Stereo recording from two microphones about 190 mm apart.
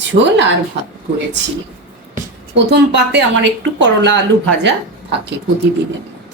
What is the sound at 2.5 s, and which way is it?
A woman's voice, 65° right (ahead or behind).